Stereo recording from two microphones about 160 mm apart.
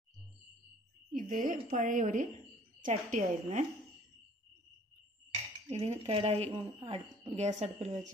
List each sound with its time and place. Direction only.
1.1 s a woman's voice: 55° right (ahead or behind)
5.7 s speech: 40° right (ahead or behind)